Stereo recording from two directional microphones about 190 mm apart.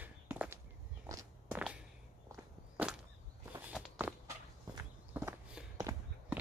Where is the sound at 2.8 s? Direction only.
5° right (ahead or behind).